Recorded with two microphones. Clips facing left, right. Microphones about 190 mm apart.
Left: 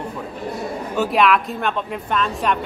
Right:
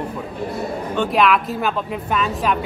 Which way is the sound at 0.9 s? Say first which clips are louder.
Even; 5° left (ahead or behind).